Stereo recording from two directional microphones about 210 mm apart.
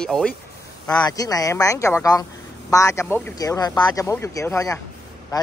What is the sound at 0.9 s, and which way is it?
Speech, 20° left (ahead or behind).